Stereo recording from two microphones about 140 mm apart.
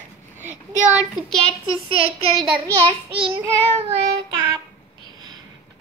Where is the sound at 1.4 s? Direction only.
40° right (ahead or behind).